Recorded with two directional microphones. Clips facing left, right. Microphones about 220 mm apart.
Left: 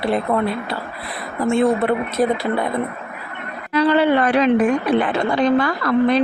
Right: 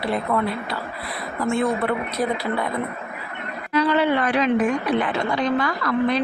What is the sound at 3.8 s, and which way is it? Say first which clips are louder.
Speech: left 6 dB; 35° left (ahead or behind).